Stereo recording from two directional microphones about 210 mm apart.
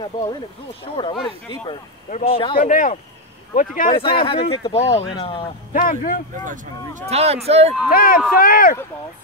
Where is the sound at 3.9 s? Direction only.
25° left (ahead or behind).